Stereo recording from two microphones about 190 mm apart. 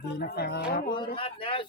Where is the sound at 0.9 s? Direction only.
25° left (ahead or behind).